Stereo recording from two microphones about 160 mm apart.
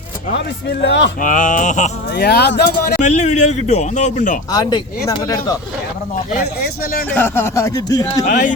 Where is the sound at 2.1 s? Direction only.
90° left.